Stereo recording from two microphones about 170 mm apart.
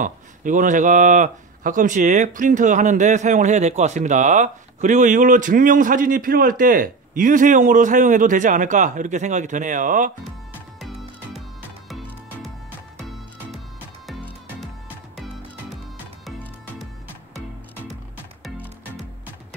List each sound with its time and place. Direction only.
0.0 s speech: 50° right (ahead or behind)
10.8 s music: centre (ahead or behind)
14.0 s music: centre (ahead or behind)
18.4 s music: centre (ahead or behind)